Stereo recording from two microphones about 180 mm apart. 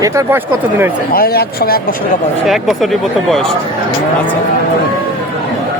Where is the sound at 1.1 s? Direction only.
60° left (ahead or behind).